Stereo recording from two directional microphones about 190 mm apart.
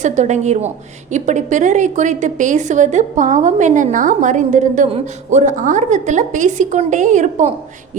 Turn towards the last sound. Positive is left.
turn(degrees=-40)  # may be behind; listen again after turning